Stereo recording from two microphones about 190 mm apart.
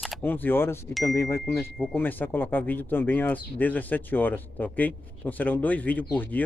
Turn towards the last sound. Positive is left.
turn(degrees=10)  # may be behind; listen again after turning